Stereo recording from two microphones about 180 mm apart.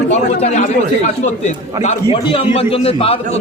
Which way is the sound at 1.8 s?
35° left (ahead or behind).